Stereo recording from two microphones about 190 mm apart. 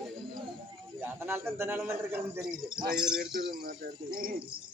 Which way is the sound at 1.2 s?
10° right (ahead or behind).